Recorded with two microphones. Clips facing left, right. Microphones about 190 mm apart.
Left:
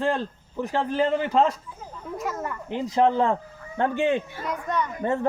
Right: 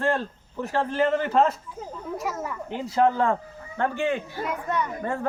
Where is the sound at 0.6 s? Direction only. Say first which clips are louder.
Even; 15° left (ahead or behind).